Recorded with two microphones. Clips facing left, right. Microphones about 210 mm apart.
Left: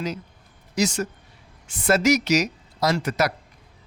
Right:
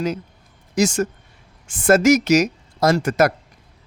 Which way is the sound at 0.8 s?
50° right (ahead or behind).